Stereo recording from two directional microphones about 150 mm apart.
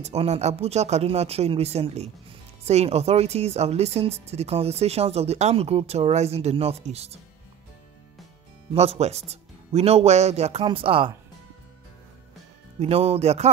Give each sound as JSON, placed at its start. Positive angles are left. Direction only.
{"t": 0.0, "sound": "speech", "side_deg": -45}
{"t": 8.7, "sound": "speech", "side_deg": -45}
{"t": 12.7, "sound": "speech", "side_deg": -45}